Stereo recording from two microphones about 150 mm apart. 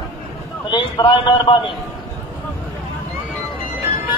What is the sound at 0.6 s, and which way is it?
Speech, 30° left (ahead or behind).